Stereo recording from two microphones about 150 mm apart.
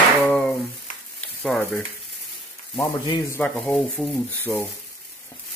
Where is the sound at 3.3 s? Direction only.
5° left (ahead or behind).